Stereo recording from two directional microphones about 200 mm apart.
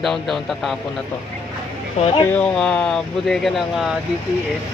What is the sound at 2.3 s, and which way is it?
Speech, 5° left (ahead or behind).